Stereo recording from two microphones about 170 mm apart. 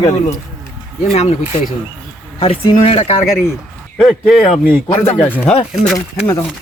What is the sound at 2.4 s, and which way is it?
Speech, 35° left (ahead or behind).